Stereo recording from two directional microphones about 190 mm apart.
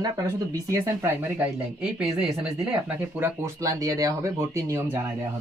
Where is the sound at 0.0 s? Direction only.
20° right (ahead or behind).